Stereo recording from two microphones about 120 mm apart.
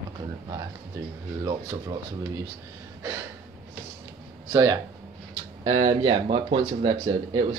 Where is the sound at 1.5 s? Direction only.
25° right (ahead or behind).